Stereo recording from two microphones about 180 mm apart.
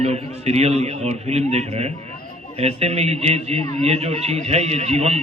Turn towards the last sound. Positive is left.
turn(degrees=-35)  # may be behind; listen again after turning